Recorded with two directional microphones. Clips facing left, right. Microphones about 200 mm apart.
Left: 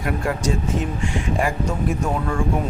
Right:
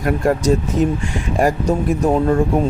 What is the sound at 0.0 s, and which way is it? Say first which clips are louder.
Speech: right 6 dB; 40° right (ahead or behind).